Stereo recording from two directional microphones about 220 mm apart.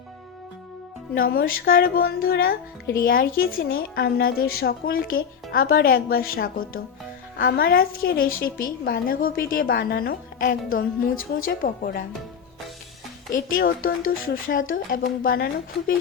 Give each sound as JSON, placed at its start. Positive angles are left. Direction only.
{"t": 1.1, "sound": "speech", "side_deg": 40}
{"t": 11.1, "sound": "speech", "side_deg": 70}
{"t": 11.4, "sound": "speech", "side_deg": 40}
{"t": 13.3, "sound": "speech", "side_deg": 40}